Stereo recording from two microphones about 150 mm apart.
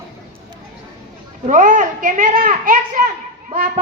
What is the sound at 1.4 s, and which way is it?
A child's voice, 60° right (ahead or behind).